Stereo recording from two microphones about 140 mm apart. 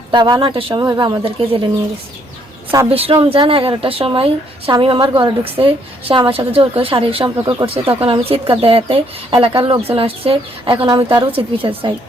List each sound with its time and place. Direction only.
0.1 s a woman's voice: 30° right (ahead or behind)
2.9 s a woman's voice: 45° right (ahead or behind)
10.8 s a woman's voice: 30° right (ahead or behind)